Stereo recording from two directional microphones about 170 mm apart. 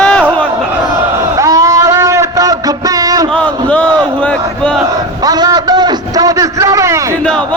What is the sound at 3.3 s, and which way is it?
Crowd, 10° left (ahead or behind).